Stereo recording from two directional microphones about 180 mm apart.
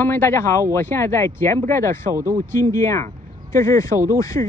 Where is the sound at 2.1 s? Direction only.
15° right (ahead or behind).